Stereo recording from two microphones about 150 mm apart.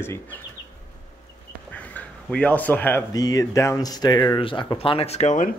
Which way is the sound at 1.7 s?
10° left (ahead or behind).